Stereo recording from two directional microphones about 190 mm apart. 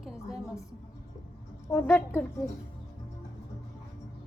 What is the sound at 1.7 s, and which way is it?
Speech, 10° left (ahead or behind).